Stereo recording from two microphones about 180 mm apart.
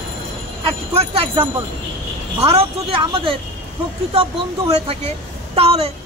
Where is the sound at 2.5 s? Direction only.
35° right (ahead or behind).